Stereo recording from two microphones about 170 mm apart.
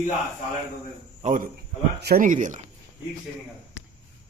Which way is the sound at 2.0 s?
55° right (ahead or behind).